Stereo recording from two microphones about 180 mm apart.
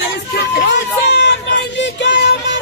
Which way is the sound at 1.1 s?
70° left (ahead or behind).